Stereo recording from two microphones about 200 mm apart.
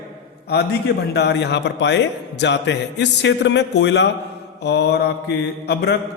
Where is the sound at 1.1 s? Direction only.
55° left (ahead or behind).